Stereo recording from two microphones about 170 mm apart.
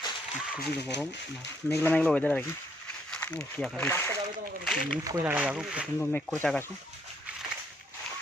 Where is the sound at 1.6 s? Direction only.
10° left (ahead or behind).